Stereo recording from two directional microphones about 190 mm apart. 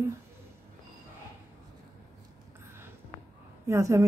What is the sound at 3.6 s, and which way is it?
Speech, 15° right (ahead or behind).